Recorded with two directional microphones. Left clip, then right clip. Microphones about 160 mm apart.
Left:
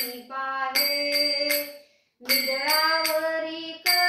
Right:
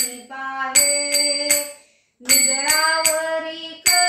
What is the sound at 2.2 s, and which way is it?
Music, 35° right (ahead or behind).